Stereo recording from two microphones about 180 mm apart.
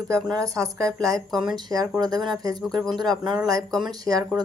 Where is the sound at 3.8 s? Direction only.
20° right (ahead or behind).